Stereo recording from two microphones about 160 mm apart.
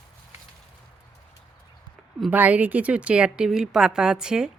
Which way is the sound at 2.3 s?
10° right (ahead or behind).